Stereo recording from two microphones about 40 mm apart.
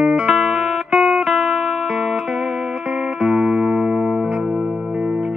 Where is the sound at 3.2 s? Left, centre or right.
Centre.